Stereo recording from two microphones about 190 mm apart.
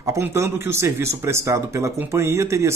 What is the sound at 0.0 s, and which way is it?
Speech, 15° right (ahead or behind).